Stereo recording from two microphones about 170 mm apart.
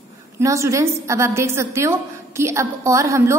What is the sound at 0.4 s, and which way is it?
A woman's voice, 15° right (ahead or behind).